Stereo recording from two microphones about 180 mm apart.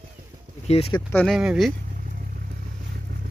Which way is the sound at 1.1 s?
10° left (ahead or behind).